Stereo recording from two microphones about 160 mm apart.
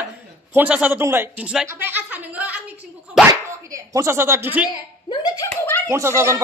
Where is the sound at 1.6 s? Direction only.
15° right (ahead or behind).